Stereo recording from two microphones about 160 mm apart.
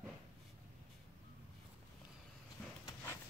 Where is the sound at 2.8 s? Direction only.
15° left (ahead or behind).